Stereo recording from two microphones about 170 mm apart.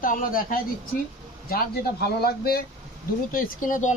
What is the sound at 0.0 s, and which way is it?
Speech, 55° left (ahead or behind).